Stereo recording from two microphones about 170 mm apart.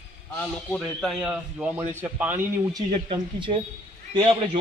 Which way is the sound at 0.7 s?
Centre (ahead or behind).